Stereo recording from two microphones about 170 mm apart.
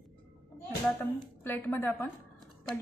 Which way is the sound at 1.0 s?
10° left (ahead or behind).